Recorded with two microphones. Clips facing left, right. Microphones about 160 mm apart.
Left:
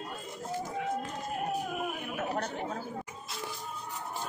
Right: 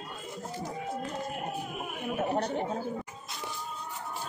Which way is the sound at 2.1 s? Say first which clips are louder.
Right 6 dB; 30° right (ahead or behind).